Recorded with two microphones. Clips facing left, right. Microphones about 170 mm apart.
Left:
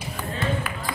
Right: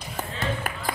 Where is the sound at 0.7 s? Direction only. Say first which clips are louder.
Even; 45° right (ahead or behind).